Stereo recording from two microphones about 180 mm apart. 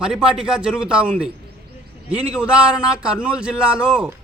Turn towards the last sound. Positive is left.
turn(degrees=-5)  # may be behind; listen again after turning